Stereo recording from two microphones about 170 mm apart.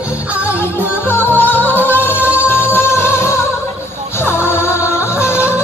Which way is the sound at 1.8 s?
10° right (ahead or behind).